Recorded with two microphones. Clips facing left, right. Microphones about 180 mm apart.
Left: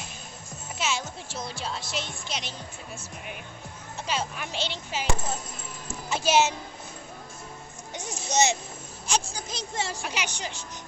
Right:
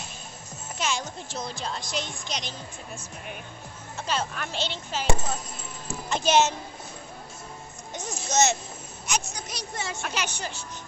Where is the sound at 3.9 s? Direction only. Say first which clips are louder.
Right 1 dB; 10° left (ahead or behind).